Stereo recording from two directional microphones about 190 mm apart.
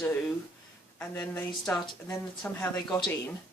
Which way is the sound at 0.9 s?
10° left (ahead or behind).